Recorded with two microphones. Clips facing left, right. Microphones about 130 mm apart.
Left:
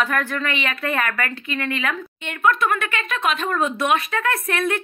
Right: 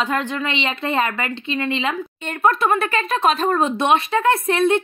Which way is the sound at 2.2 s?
35° right (ahead or behind).